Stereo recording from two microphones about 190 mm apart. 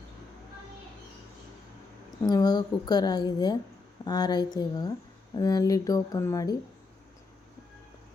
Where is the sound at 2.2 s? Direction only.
20° left (ahead or behind).